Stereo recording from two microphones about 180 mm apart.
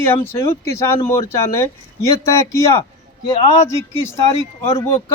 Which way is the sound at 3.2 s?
20° left (ahead or behind).